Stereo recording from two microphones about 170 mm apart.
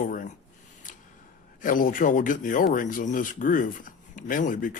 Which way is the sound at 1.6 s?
50° left (ahead or behind).